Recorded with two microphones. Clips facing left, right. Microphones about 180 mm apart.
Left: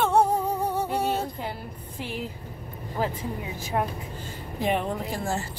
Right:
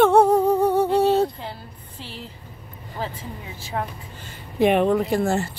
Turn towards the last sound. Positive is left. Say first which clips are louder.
# right 8 dB
turn(degrees=-65)  # may be behind; listen again after turning